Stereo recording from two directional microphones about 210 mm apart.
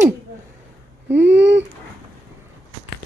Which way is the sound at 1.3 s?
55° right (ahead or behind).